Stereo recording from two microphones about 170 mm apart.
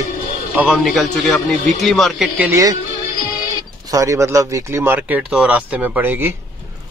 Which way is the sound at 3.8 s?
20° right (ahead or behind).